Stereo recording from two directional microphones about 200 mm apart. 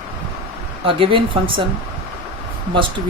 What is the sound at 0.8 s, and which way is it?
Speech, 25° right (ahead or behind).